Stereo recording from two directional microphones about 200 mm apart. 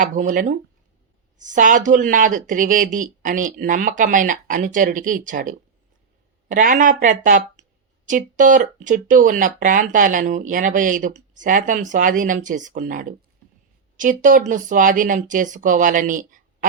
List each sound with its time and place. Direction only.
0.0 s speech: 40° right (ahead or behind)